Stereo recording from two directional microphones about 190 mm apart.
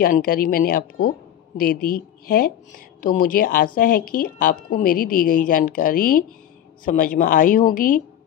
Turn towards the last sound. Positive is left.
turn(degrees=45)  # may be behind; listen again after turning